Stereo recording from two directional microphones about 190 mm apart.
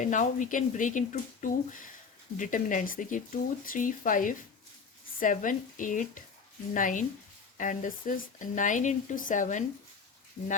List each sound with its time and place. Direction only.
0.0 s speech: 40° left (ahead or behind)